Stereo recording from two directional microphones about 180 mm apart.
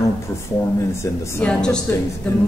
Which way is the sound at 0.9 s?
5° left (ahead or behind).